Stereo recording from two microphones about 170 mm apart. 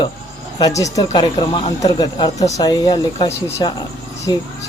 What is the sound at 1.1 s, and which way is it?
Speech, 25° left (ahead or behind).